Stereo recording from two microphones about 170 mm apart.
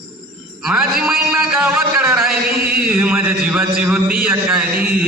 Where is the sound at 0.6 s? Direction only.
5° right (ahead or behind).